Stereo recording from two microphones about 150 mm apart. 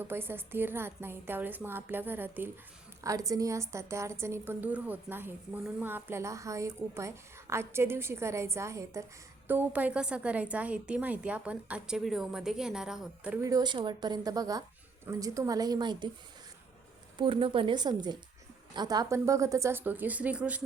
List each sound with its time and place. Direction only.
0.0 s a woman's voice: 15° right (ahead or behind)
13.4 s a woman's voice: 25° right (ahead or behind)
17.2 s a woman's voice: 35° right (ahead or behind); by 20.6 s 10° right (ahead or behind)